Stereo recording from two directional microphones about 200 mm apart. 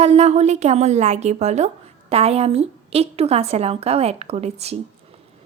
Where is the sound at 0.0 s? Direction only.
30° right (ahead or behind).